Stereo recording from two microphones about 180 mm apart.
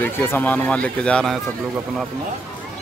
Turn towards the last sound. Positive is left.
turn(degrees=5)  # may be behind; listen again after turning